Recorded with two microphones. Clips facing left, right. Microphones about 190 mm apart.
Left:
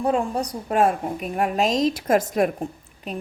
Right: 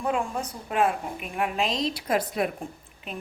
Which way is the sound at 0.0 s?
35° left (ahead or behind).